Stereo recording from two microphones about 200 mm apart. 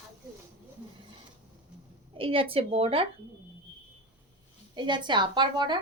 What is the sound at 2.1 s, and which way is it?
Speech, 25° right (ahead or behind).